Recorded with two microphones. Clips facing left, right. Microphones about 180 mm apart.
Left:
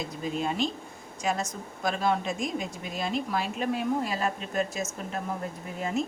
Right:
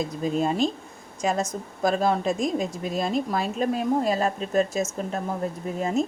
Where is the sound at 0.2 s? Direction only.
40° right (ahead or behind).